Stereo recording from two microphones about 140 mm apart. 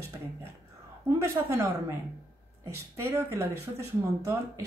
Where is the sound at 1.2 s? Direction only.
20° right (ahead or behind).